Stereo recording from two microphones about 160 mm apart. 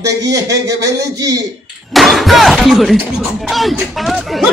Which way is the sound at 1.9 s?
Centre (ahead or behind).